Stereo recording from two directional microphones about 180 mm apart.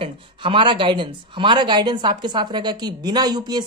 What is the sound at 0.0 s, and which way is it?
Speech, 30° right (ahead or behind).